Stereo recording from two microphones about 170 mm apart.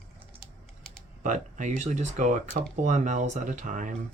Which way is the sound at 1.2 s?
45° right (ahead or behind).